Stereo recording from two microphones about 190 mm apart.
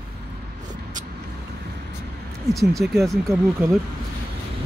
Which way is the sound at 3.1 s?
15° right (ahead or behind).